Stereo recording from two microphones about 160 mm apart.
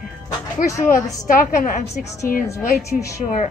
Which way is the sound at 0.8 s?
55° left (ahead or behind).